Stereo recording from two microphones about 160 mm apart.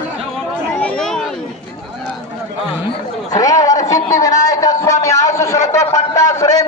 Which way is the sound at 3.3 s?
20° left (ahead or behind).